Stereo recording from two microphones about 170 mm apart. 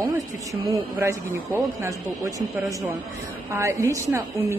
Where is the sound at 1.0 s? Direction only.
15° right (ahead or behind).